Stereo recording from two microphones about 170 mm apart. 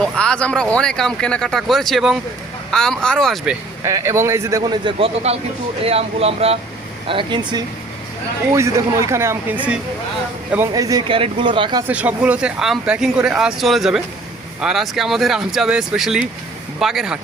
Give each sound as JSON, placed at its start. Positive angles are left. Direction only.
{"t": 0.0, "sound": "speech", "side_deg": 5}
{"t": 3.8, "sound": "a man's voice", "side_deg": -15}
{"t": 8.5, "sound": "a man's voice", "side_deg": -15}
{"t": 11.1, "sound": "a man's voice", "side_deg": -30}
{"t": 11.9, "sound": "speech", "side_deg": -10}